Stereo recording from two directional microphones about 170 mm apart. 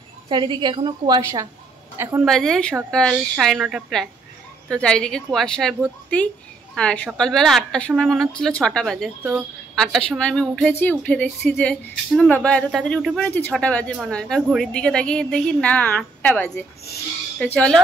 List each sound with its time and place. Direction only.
0.3 s a woman's voice: 25° right (ahead or behind)
2.2 s a woman's voice: 5° left (ahead or behind)